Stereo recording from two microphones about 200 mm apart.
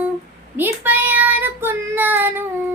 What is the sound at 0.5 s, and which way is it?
Child singing, 10° right (ahead or behind).